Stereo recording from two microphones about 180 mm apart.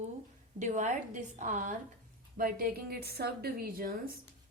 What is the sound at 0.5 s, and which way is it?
A woman's voice, 40° right (ahead or behind).